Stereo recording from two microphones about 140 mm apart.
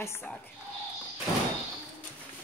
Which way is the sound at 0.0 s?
15° left (ahead or behind).